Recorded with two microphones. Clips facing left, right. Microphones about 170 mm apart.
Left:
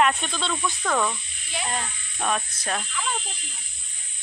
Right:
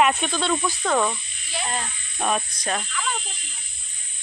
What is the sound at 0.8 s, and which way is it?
Speech, 15° right (ahead or behind).